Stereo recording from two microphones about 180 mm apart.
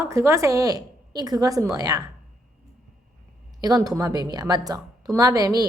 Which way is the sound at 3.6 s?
20° right (ahead or behind).